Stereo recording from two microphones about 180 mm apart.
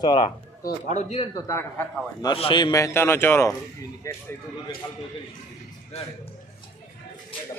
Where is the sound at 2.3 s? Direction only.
25° left (ahead or behind).